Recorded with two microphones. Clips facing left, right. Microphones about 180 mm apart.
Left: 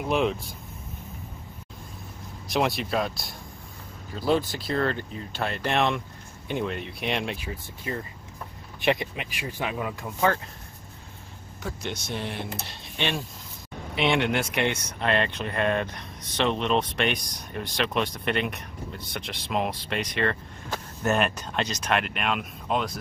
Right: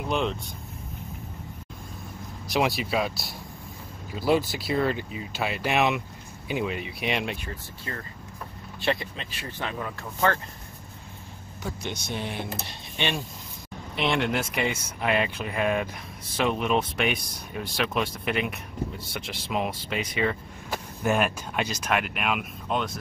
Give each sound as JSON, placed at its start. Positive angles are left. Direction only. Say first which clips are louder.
{"t": 0.0, "sound": "speech", "louder": "left 3 dB", "side_deg": 5}
{"t": 2.4, "sound": "speech", "louder": "even", "side_deg": 0}
{"t": 7.9, "sound": "speech", "louder": "left 4 dB", "side_deg": 15}
{"t": 11.6, "sound": "speech", "louder": "even", "side_deg": 0}